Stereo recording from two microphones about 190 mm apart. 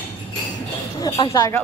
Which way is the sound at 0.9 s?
25° left (ahead or behind).